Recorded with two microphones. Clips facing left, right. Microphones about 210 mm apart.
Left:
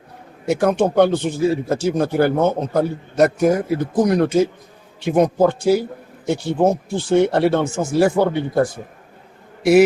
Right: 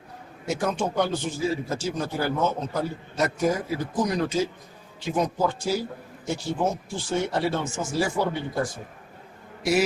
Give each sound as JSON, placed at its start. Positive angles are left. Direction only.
{"t": 0.4, "sound": "speech", "side_deg": 60}